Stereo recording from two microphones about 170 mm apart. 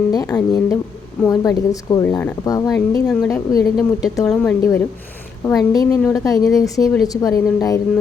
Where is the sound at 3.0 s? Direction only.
10° left (ahead or behind).